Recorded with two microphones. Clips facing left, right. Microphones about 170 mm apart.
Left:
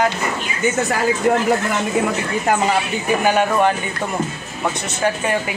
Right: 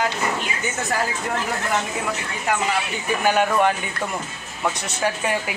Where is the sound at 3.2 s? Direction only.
Centre (ahead or behind).